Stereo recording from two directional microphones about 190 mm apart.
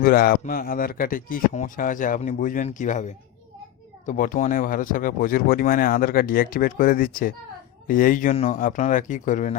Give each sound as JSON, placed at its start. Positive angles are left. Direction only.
{"t": 0.0, "sound": "speech", "side_deg": 50}